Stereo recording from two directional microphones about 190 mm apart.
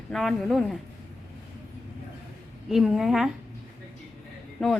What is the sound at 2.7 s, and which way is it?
Speech, centre (ahead or behind).